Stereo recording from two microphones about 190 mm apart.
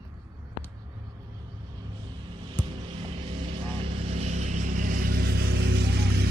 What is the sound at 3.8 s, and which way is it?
Vehicle, 35° right (ahead or behind).